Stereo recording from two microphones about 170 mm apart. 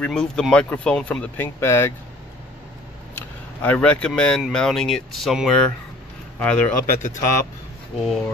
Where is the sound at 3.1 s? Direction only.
10° left (ahead or behind).